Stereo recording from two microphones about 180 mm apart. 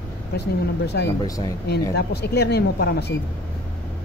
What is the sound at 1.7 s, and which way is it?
Speech, 65° left (ahead or behind).